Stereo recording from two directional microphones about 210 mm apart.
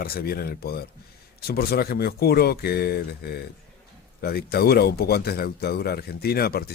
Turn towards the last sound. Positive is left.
turn(degrees=45)  # may be behind; listen again after turning